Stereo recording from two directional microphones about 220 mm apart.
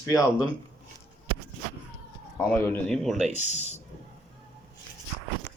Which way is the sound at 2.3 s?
10° left (ahead or behind).